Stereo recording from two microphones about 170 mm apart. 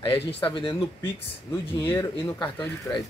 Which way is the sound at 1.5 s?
15° left (ahead or behind).